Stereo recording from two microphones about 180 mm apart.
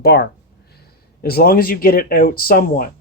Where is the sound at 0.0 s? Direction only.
65° left (ahead or behind).